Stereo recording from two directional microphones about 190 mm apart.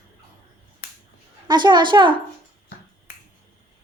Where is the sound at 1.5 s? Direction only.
25° right (ahead or behind).